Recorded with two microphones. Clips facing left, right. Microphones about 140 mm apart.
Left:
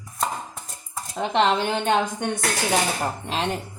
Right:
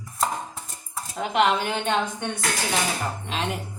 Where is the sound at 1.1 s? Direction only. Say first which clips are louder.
Left 1 dB; 25° left (ahead or behind); by 2.4 s 45° left (ahead or behind).